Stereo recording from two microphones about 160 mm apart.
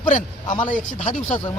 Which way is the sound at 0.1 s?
50° left (ahead or behind).